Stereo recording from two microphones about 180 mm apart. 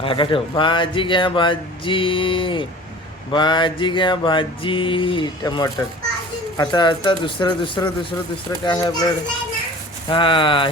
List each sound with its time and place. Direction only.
0.0 s speech: 30° left (ahead or behind)